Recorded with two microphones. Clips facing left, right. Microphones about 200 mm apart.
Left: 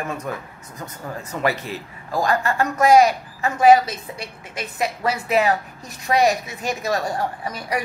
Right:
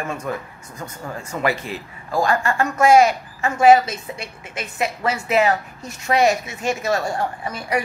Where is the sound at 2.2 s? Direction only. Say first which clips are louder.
Even; 40° left (ahead or behind).